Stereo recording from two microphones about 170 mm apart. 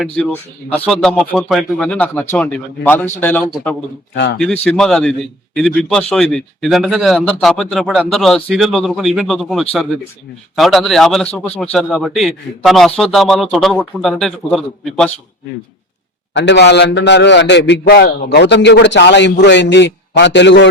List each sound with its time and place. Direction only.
0.9 s speech: 5° left (ahead or behind)
4.1 s a man's voice: 90° left
4.4 s a man's voice: 5° left (ahead or behind)
16.3 s a man's voice: 90° left